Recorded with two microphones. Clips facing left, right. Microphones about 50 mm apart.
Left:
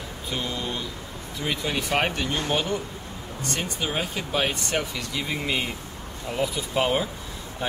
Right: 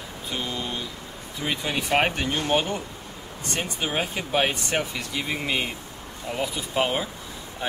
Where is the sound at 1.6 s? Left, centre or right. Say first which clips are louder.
Right 2 dB; centre.